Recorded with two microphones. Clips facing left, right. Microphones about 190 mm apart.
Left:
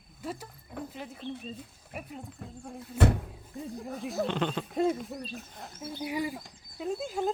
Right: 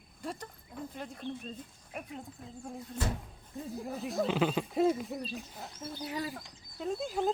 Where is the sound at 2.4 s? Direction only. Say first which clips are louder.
Left 3 dB; 70° left (ahead or behind).